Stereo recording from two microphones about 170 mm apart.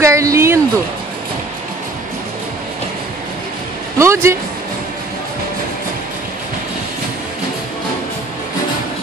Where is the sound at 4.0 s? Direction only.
15° right (ahead or behind).